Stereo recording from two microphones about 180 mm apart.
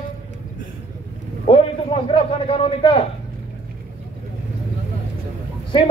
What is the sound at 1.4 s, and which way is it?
A man's voice, 30° left (ahead or behind).